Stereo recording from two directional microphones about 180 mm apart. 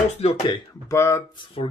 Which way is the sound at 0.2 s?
35° left (ahead or behind).